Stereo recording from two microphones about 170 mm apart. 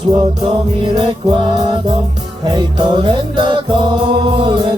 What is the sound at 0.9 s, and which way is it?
Music, 25° right (ahead or behind).